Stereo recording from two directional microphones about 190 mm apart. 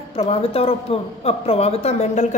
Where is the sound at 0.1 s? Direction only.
30° left (ahead or behind).